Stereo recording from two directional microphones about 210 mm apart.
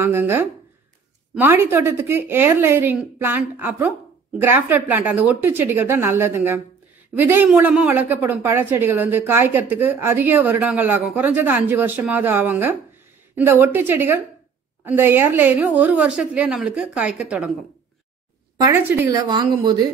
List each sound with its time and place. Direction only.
0.0 s a woman's voice: 10° right (ahead or behind)
18.6 s a woman's voice: 10° right (ahead or behind)